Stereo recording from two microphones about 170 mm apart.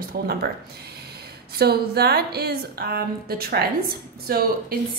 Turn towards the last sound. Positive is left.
turn(degrees=-65)  # may be behind; listen again after turning